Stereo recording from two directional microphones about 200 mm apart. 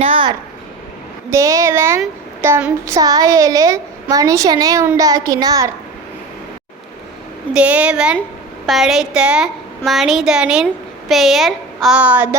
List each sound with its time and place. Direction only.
0.0 s a sound: 25° right (ahead or behind)
1.3 s a woman's voice: 15° right (ahead or behind)
7.5 s a woman's voice: 5° right (ahead or behind)